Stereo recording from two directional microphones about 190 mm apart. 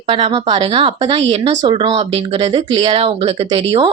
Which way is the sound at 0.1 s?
25° right (ahead or behind).